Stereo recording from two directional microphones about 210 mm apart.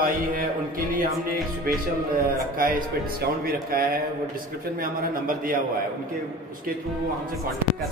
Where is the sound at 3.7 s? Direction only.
45° right (ahead or behind).